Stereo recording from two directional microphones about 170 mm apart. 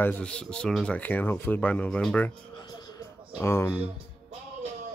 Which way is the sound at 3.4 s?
15° left (ahead or behind).